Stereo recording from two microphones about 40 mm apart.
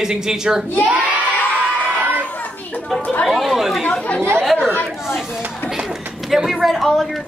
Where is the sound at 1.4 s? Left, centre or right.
Left.